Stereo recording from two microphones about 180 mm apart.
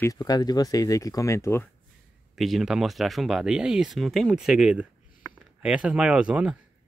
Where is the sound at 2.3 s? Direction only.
Centre (ahead or behind).